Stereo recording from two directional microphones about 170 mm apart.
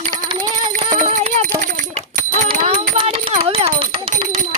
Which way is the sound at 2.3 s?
40° right (ahead or behind).